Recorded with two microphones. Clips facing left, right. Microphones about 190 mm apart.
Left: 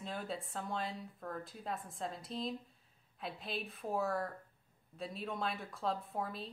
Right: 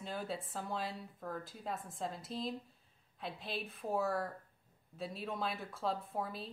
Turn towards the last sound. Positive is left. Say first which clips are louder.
# even
turn(degrees=0)  # may be behind; listen again after turning